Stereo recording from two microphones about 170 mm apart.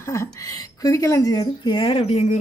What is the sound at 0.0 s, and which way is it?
A woman's voice, 15° left (ahead or behind).